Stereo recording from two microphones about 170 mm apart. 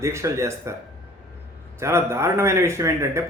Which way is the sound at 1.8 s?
15° right (ahead or behind).